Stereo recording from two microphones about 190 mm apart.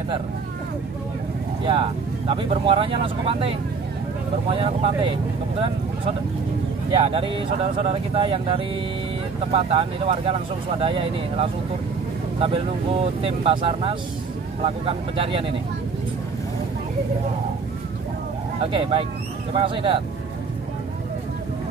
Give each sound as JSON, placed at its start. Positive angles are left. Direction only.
{"t": 1.7, "sound": "speech", "side_deg": -25}
{"t": 6.9, "sound": "speech", "side_deg": -25}
{"t": 18.6, "sound": "speech", "side_deg": -25}